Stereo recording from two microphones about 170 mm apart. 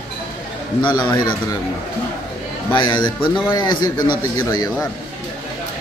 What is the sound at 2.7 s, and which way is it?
A man's voice, 25° left (ahead or behind).